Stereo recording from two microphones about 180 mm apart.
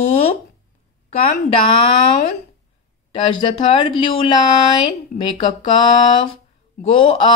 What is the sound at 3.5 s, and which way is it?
Speech, 30° left (ahead or behind).